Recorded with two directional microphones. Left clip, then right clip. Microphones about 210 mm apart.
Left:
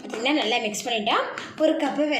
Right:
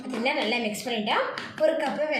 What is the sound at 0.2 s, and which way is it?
A woman's voice, 40° left (ahead or behind).